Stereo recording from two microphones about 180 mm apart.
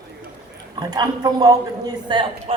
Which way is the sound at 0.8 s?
25° right (ahead or behind).